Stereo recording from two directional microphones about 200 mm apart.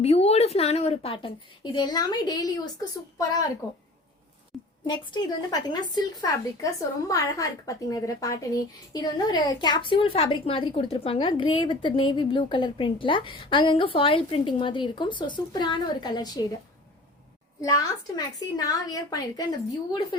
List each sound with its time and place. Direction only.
0.0 s a woman's voice: 30° left (ahead or behind)
4.5 s a sound: centre (ahead or behind)
4.9 s a woman's voice: 20° left (ahead or behind)
17.6 s a woman's voice: 15° left (ahead or behind)